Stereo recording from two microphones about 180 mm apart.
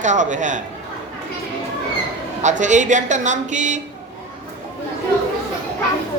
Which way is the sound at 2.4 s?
40° right (ahead or behind).